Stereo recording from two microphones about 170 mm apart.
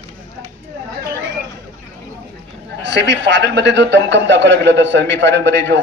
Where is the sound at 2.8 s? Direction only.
90° right.